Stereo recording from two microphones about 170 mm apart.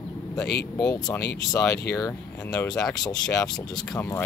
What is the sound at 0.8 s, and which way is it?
Speech, 20° left (ahead or behind).